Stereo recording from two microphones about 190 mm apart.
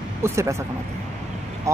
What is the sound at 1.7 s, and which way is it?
Speech, 15° right (ahead or behind).